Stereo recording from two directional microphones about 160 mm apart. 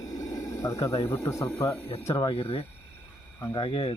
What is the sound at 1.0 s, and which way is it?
Speech, 15° left (ahead or behind).